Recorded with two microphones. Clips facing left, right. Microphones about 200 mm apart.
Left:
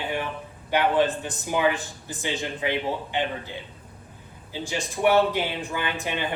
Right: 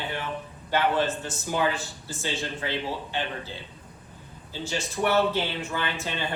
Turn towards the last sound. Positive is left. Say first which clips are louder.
# left 3 dB
turn(degrees=15)  # may be behind; listen again after turning